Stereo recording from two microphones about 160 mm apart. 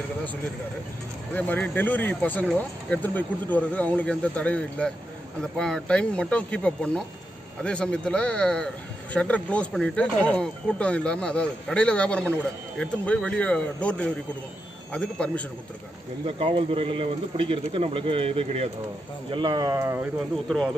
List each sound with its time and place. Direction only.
1.3 s speech: 10° left (ahead or behind)
16.3 s speech: 35° right (ahead or behind); by 20.1 s 15° right (ahead or behind)
20.4 s speech: 5° left (ahead or behind)